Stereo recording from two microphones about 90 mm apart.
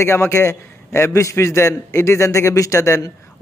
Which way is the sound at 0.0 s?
30° left (ahead or behind).